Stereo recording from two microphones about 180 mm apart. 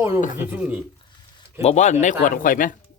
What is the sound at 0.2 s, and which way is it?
Speech, 45° left (ahead or behind).